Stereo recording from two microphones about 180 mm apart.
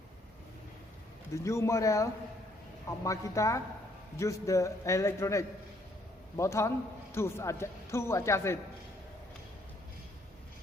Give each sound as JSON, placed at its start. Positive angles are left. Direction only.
{"t": 1.3, "sound": "a man's voice", "side_deg": 15}